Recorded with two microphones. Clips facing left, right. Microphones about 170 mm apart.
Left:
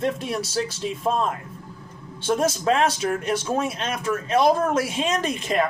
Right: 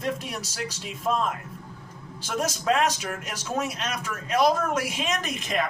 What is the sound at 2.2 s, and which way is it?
Speech, 30° left (ahead or behind).